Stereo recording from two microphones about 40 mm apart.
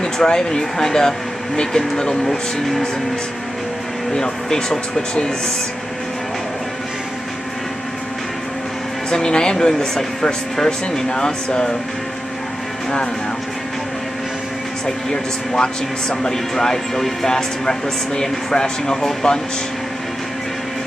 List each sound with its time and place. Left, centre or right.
0.0 s speech: centre
4.1 s speech: centre
9.1 s speech: centre
15.0 s speech: centre